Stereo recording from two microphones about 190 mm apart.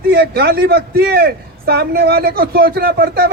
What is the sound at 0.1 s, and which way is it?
A man's voice, 60° right (ahead or behind).